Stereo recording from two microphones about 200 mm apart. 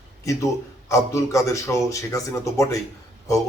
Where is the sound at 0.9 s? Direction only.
15° left (ahead or behind).